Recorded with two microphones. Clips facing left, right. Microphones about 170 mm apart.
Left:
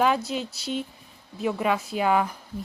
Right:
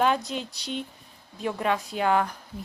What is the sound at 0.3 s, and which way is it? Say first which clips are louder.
Speech: left 3 dB; 5° left (ahead or behind).